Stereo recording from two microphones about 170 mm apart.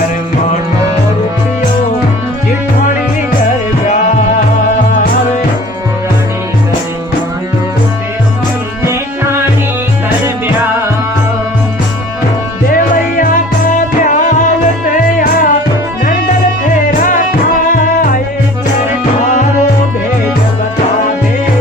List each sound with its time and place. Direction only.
12.7 s music: 55° left (ahead or behind)
17.0 s music: 55° left (ahead or behind)